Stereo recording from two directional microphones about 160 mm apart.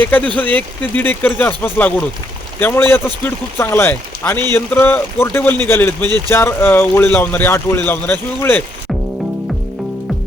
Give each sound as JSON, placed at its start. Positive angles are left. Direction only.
{"t": 0.0, "sound": "speech", "side_deg": 10}